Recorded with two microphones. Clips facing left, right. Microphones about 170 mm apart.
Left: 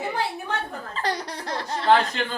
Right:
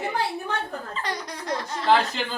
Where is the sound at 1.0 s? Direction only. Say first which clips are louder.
Left 4 dB; 30° left (ahead or behind).